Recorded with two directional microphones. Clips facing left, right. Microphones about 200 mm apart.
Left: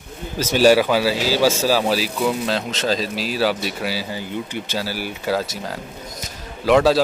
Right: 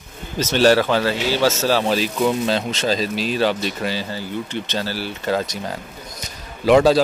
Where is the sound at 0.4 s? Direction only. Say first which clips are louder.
Left 1 dB; 10° left (ahead or behind).